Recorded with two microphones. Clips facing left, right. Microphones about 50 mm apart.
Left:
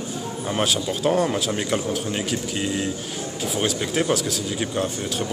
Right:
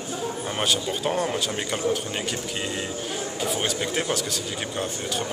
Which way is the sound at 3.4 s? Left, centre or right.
Centre.